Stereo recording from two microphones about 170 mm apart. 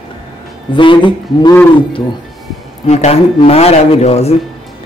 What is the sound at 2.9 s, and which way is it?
Speech, 40° left (ahead or behind).